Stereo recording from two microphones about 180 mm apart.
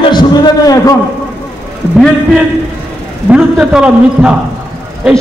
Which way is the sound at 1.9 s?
Centre (ahead or behind).